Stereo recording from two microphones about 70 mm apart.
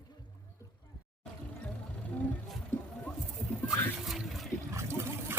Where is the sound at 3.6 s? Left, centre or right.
Centre.